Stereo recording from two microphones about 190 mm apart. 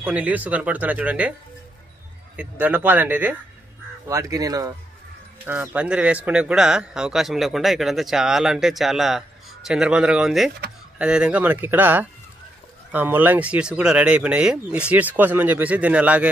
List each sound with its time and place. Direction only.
0.0 s speech: 10° right (ahead or behind)
2.6 s speech: 10° right (ahead or behind)